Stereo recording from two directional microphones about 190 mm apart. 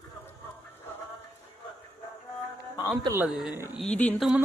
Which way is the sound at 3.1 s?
5° right (ahead or behind).